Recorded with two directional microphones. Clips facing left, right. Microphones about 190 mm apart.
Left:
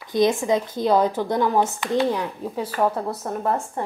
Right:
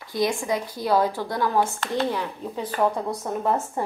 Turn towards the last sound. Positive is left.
turn(degrees=0)  # may be behind; listen again after turning